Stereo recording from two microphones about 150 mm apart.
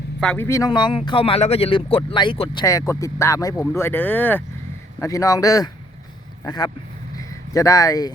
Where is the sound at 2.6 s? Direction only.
20° left (ahead or behind).